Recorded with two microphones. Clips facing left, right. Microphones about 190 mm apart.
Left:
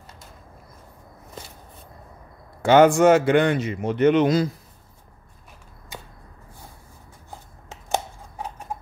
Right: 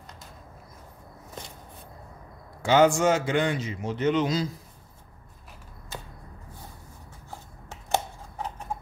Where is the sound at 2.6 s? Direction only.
60° left (ahead or behind).